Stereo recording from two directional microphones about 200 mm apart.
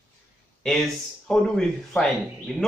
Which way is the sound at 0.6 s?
Centre (ahead or behind).